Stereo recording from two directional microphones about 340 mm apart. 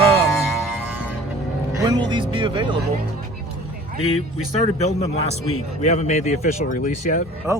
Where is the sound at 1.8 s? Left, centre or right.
Centre.